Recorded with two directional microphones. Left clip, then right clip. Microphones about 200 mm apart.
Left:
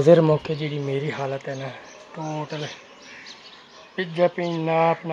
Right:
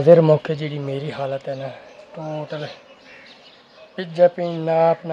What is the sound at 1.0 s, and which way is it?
Speech, centre (ahead or behind).